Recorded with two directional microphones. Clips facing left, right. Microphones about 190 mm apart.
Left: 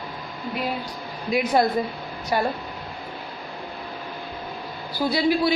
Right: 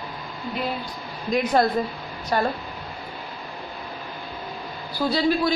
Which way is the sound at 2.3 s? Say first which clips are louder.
Even; 10° left (ahead or behind).